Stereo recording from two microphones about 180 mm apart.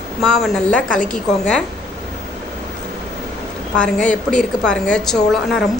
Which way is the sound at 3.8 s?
5° left (ahead or behind).